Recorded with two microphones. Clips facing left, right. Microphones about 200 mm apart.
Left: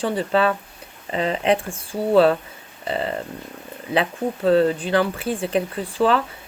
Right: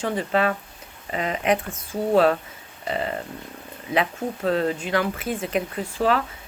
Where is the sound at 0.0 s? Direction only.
30° left (ahead or behind).